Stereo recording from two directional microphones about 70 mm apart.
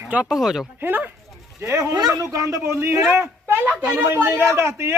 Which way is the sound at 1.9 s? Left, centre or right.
Right.